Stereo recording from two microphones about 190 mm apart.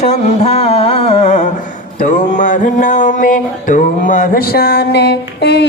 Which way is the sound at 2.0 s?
40° left (ahead or behind).